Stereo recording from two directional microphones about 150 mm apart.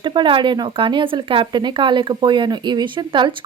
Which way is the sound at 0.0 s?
30° right (ahead or behind).